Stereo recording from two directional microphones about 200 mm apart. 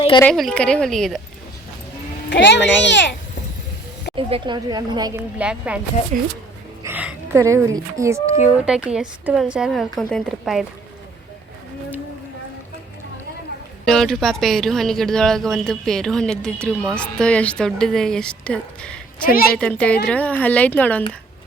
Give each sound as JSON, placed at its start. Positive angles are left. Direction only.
{"t": 0.3, "sound": "speech", "side_deg": 5}
{"t": 2.3, "sound": "a child's voice", "side_deg": 60}
{"t": 4.1, "sound": "speech", "side_deg": -25}
{"t": 5.4, "sound": "speech", "side_deg": -5}
{"t": 6.8, "sound": "speech", "side_deg": -5}
{"t": 8.6, "sound": "speech", "side_deg": -5}
{"t": 13.8, "sound": "speech", "side_deg": 0}
{"t": 19.2, "sound": "a woman's voice", "side_deg": 45}
{"t": 19.5, "sound": "speech", "side_deg": 5}